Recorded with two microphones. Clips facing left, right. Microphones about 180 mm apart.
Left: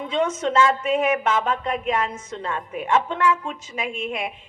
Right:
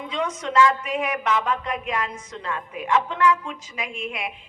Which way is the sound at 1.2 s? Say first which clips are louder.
Left 1 dB; 45° left (ahead or behind).